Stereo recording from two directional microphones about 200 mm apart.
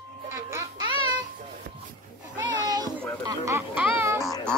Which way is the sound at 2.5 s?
20° right (ahead or behind).